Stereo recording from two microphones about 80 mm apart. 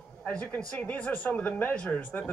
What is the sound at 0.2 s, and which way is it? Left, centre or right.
Speech, centre.